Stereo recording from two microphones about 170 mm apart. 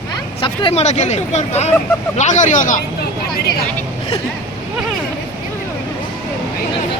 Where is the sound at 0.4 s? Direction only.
35° left (ahead or behind); by 2.8 s 50° left (ahead or behind).